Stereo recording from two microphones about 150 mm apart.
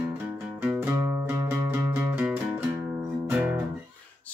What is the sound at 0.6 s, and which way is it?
Music, 15° right (ahead or behind).